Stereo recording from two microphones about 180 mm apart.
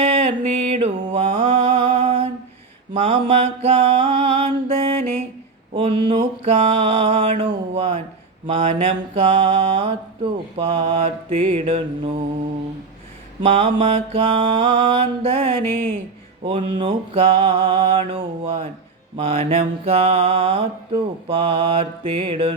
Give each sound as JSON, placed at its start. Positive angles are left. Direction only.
{"t": 0.0, "sound": "mantra", "side_deg": -35}
{"t": 13.4, "sound": "mantra", "side_deg": -30}